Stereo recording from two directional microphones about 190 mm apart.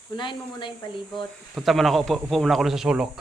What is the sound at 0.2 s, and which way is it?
Speech, 25° left (ahead or behind).